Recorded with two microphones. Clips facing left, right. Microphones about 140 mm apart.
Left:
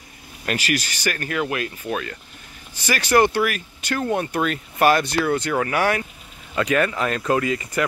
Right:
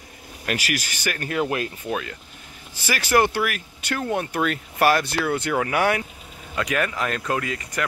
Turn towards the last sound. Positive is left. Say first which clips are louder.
# left 5 dB
turn(degrees=5)  # may be behind; listen again after turning